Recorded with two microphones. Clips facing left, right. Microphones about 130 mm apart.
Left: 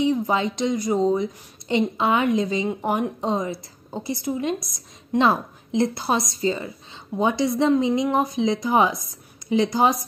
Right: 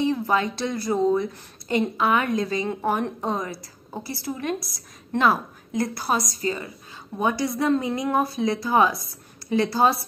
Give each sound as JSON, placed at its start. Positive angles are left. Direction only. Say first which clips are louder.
{"t": 0.0, "sound": "a woman's voice", "louder": "left 1 dB", "side_deg": 20}